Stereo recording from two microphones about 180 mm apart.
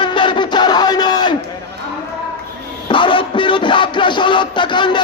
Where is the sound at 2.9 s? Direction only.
25° left (ahead or behind).